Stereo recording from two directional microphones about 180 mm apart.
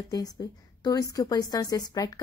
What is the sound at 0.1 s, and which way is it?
A woman's voice, 20° left (ahead or behind).